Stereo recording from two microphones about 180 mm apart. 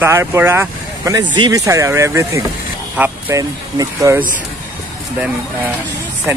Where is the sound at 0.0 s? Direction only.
15° right (ahead or behind).